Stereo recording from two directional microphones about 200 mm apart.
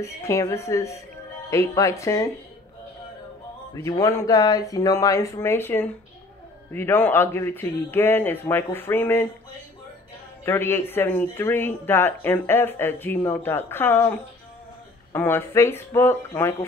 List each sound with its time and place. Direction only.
0.0 s speech: 15° left (ahead or behind)
3.7 s speech: 15° left (ahead or behind)
10.4 s speech: 10° left (ahead or behind)
15.1 s speech: 10° left (ahead or behind)